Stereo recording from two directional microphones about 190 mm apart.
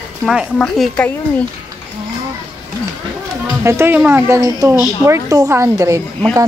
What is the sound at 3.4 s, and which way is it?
Speech, 15° right (ahead or behind).